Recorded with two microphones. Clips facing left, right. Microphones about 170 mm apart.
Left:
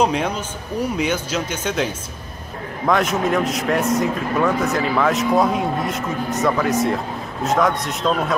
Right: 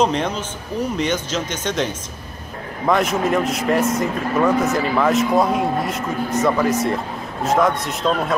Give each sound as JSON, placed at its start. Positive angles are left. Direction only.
{"t": 0.0, "sound": "speech", "side_deg": 10}
{"t": 2.9, "sound": "a man's voice", "side_deg": 0}